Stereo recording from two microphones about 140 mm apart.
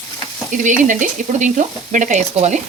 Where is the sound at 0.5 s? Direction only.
65° right (ahead or behind).